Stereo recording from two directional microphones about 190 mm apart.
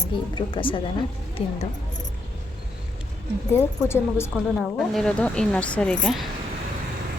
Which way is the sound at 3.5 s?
15° left (ahead or behind).